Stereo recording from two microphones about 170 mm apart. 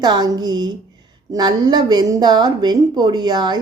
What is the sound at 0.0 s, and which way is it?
A woman's voice, 25° right (ahead or behind).